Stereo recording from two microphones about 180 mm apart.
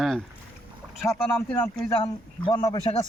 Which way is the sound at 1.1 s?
10° left (ahead or behind).